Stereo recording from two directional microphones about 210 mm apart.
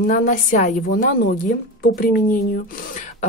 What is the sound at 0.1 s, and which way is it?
Speech, 40° left (ahead or behind).